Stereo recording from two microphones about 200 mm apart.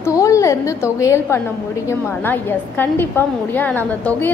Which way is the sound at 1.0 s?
15° left (ahead or behind).